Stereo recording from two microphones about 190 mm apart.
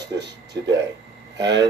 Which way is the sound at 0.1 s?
65° right (ahead or behind).